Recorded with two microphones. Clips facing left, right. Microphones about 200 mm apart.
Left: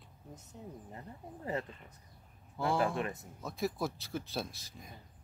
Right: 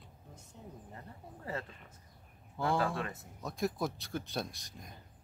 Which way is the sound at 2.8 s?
15° left (ahead or behind).